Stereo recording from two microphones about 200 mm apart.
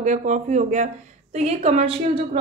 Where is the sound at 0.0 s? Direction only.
40° right (ahead or behind).